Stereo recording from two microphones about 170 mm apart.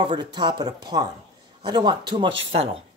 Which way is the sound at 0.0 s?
25° right (ahead or behind).